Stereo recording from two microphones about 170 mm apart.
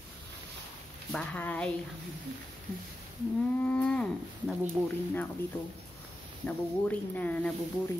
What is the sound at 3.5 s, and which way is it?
Speech, 10° left (ahead or behind).